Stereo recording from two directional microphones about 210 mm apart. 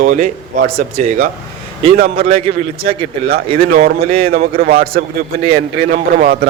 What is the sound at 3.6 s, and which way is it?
A man's voice, 45° right (ahead or behind).